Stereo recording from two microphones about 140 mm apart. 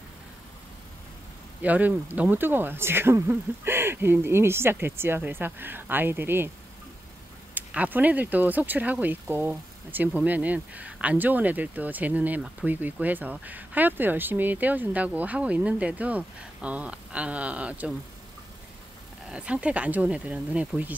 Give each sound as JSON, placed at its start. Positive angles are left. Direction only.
{"t": 1.6, "sound": "speech", "side_deg": -10}
{"t": 7.5, "sound": "speech", "side_deg": -10}
{"t": 19.2, "sound": "speech", "side_deg": -10}